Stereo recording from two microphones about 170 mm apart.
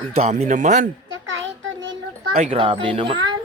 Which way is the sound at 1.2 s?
90° right.